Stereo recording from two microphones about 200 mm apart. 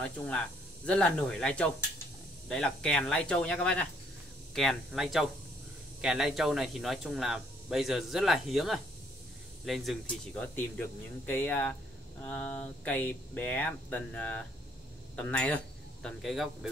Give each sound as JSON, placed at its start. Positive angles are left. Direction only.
{"t": 0.8, "sound": "speech", "side_deg": 5}